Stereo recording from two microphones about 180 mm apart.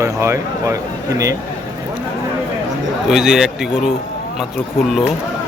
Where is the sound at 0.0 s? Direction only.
15° right (ahead or behind).